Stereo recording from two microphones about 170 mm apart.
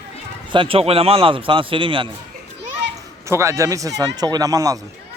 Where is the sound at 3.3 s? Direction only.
15° right (ahead or behind).